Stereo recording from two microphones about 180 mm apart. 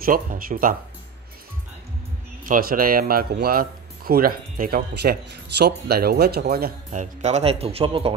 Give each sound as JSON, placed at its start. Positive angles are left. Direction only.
{"t": 0.0, "sound": "speech", "side_deg": -50}
{"t": 2.4, "sound": "speech", "side_deg": -50}